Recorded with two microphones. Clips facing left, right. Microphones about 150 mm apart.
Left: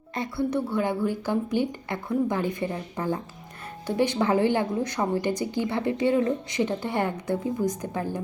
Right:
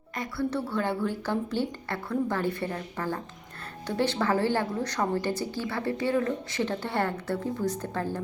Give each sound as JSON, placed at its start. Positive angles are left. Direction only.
{"t": 0.2, "sound": "a woman's voice", "side_deg": 20}